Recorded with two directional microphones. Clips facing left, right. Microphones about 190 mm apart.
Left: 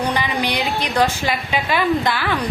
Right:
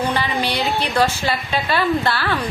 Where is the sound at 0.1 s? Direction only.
15° left (ahead or behind).